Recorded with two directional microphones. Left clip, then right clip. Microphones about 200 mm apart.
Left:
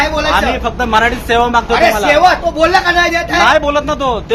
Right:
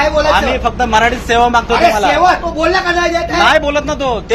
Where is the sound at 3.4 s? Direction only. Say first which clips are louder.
Even; 5° left (ahead or behind).